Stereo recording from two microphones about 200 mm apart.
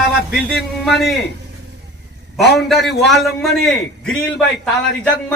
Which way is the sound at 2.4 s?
55° left (ahead or behind).